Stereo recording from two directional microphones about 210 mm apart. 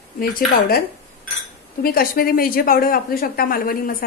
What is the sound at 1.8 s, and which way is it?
Speech, 45° left (ahead or behind).